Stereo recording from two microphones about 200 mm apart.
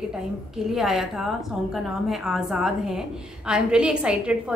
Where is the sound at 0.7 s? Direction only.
Centre (ahead or behind).